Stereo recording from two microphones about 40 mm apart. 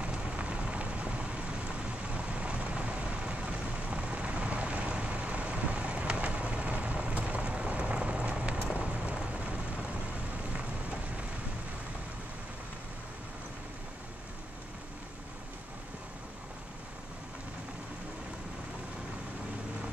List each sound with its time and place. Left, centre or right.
0.0 s rain: right